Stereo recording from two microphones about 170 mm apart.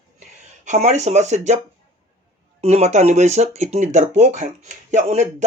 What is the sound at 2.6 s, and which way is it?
A man's voice, 40° right (ahead or behind).